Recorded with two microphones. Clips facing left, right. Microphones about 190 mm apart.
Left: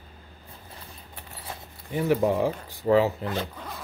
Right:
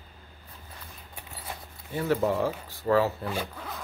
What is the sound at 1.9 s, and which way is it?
Speech, 15° left (ahead or behind).